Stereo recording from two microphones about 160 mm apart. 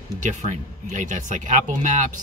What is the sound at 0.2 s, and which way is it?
Speech, 50° right (ahead or behind).